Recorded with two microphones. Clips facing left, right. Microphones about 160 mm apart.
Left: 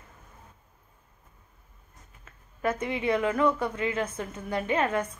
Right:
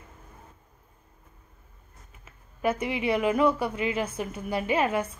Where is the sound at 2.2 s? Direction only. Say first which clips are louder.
Right 2 dB; 10° right (ahead or behind).